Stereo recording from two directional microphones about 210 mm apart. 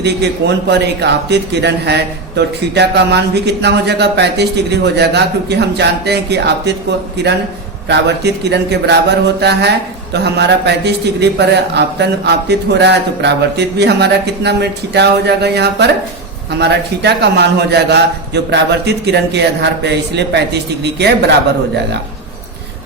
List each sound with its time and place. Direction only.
0.0 s a man's voice: 55° right (ahead or behind)